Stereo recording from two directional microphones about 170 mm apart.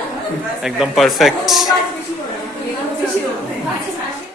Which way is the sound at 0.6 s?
Centre (ahead or behind).